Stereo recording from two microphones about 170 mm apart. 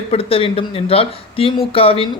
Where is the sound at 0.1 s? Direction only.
35° left (ahead or behind).